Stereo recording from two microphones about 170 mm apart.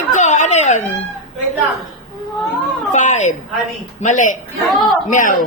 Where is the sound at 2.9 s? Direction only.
45° left (ahead or behind).